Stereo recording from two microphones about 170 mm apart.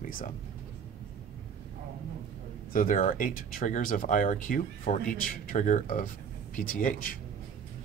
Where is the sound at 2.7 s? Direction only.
55° left (ahead or behind).